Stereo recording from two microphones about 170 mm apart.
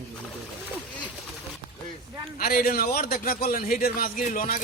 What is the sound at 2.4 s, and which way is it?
A man's voice, 60° left (ahead or behind).